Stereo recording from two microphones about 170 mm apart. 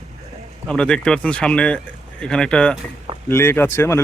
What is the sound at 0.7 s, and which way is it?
Speech, 5° left (ahead or behind).